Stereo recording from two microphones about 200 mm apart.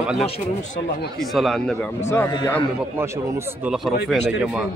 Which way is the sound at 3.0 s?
10° right (ahead or behind).